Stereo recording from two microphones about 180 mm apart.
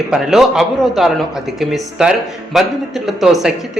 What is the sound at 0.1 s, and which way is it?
Speech, centre (ahead or behind).